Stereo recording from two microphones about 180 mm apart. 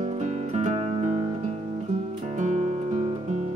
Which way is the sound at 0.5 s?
35° right (ahead or behind).